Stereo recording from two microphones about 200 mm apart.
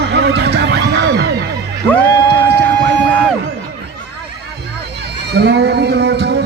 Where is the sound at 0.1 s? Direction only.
55° right (ahead or behind).